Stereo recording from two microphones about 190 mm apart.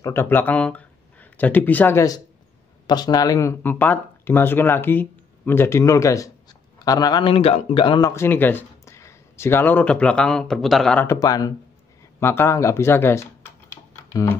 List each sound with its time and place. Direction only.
0.0 s a man's voice: 10° left (ahead or behind)
8.1 s speech: 10° left (ahead or behind)